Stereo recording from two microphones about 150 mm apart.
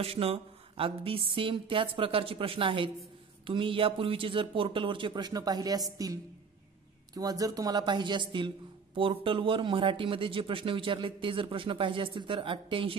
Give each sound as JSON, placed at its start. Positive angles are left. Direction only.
{"t": 0.0, "sound": "speech", "side_deg": -40}
{"t": 7.2, "sound": "speech", "side_deg": -25}